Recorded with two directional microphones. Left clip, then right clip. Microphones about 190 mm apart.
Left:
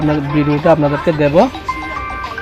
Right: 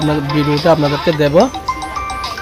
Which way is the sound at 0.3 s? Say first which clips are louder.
Even; 10° right (ahead or behind).